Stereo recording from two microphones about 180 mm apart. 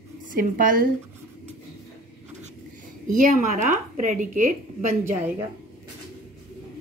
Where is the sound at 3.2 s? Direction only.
45° right (ahead or behind).